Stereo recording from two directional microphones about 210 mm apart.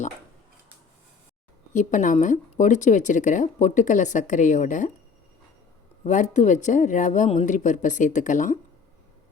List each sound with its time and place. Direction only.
1.7 s speech: 35° left (ahead or behind)
6.1 s speech: 35° left (ahead or behind)